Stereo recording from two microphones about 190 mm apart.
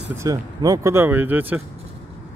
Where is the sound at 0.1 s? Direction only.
15° right (ahead or behind).